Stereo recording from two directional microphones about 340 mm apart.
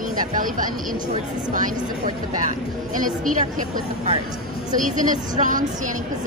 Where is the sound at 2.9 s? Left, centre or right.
Right.